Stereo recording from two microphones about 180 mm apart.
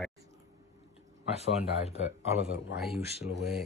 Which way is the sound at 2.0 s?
35° right (ahead or behind).